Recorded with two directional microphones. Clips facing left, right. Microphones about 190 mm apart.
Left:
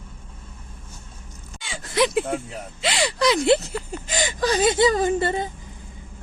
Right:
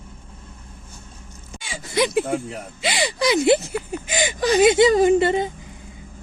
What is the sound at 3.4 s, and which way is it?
Speech, 15° right (ahead or behind).